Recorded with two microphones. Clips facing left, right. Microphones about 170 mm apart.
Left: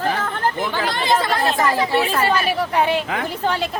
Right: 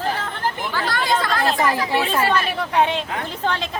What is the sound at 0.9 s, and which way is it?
Speech, 20° left (ahead or behind).